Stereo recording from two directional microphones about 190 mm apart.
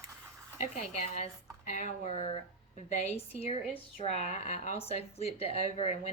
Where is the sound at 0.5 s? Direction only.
35° left (ahead or behind).